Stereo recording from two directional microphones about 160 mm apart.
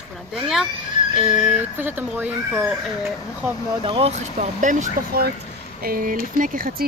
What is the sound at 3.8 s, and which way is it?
Speech, 35° right (ahead or behind).